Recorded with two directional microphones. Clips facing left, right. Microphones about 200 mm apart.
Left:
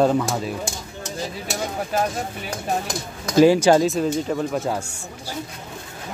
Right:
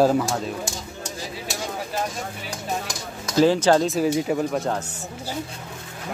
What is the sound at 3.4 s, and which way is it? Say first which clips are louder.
Speech: left 3 dB; 10° left (ahead or behind).